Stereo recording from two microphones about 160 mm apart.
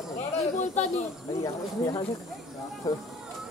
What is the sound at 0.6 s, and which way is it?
Speech, 45° left (ahead or behind).